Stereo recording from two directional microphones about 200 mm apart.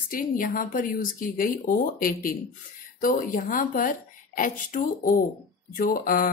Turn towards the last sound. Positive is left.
turn(degrees=45)  # may be behind; listen again after turning